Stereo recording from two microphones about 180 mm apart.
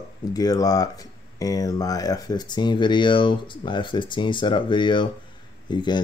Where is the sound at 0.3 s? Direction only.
20° left (ahead or behind).